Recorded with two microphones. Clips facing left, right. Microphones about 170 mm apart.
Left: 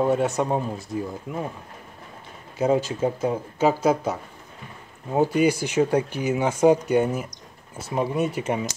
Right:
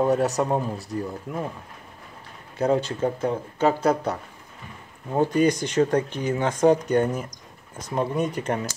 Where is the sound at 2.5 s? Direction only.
5° left (ahead or behind).